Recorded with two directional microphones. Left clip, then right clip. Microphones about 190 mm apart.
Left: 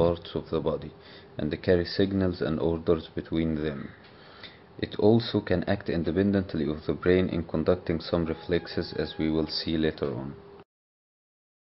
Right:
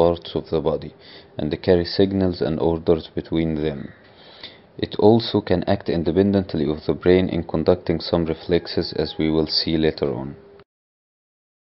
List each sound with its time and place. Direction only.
0.0 s speech: 20° right (ahead or behind)